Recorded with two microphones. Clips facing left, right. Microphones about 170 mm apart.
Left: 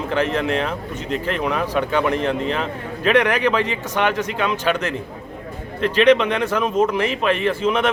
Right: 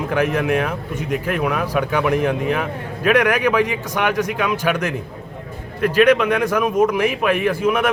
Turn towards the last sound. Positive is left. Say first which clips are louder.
# right 1 dB
turn(degrees=-10)  # may be behind; listen again after turning